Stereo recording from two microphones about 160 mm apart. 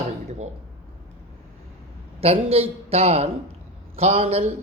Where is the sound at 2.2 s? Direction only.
40° right (ahead or behind).